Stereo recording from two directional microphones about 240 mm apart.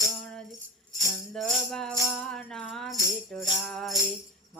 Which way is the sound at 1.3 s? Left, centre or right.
Centre.